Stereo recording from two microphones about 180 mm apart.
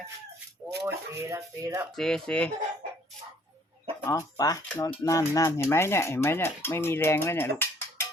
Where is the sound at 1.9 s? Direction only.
Centre (ahead or behind).